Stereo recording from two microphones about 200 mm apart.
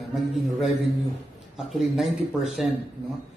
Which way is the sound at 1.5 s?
Centre (ahead or behind).